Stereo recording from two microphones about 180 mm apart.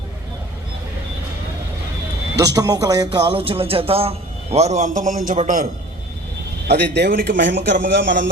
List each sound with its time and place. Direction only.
2.4 s speech: 20° right (ahead or behind)
3.3 s a man's voice: 30° right (ahead or behind); by 5.6 s 45° right (ahead or behind)
6.7 s a man's voice: 65° right (ahead or behind)